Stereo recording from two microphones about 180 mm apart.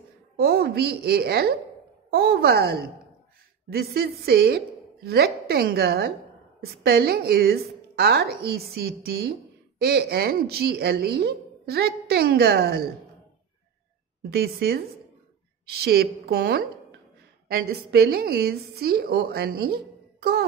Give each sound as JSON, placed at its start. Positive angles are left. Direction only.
{"t": 0.4, "sound": "a woman's voice", "side_deg": -60}
{"t": 14.3, "sound": "a woman's voice", "side_deg": -60}